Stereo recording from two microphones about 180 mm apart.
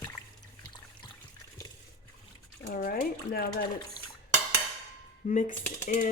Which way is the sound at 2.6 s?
60° left (ahead or behind).